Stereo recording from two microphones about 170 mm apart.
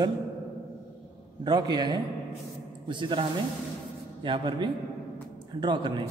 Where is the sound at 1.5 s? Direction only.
25° right (ahead or behind).